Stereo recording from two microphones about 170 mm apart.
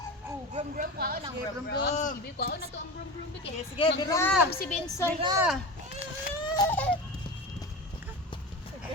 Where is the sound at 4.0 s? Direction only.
20° left (ahead or behind).